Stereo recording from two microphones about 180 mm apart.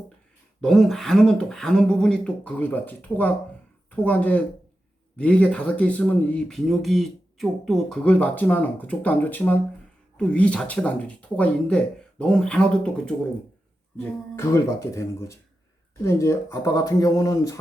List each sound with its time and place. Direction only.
0.6 s speech: centre (ahead or behind); by 17.6 s 20° left (ahead or behind)